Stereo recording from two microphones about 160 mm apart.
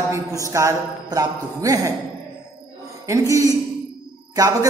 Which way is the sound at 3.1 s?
20° right (ahead or behind).